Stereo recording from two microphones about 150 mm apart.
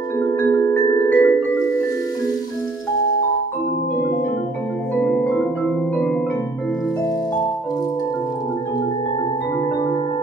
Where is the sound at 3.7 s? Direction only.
90° left.